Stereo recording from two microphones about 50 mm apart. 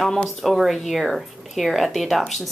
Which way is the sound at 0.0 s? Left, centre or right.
Centre.